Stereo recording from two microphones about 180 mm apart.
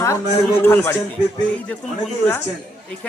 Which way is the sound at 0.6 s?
10° left (ahead or behind).